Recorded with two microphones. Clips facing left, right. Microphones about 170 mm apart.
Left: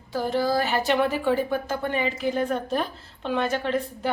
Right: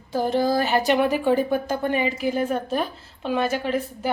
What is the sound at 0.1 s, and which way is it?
A woman's voice, 20° right (ahead or behind).